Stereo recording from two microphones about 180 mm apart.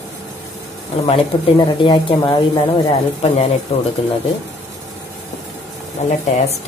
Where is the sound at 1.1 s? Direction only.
30° left (ahead or behind).